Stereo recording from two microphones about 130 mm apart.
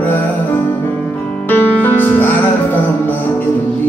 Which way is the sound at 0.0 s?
15° left (ahead or behind).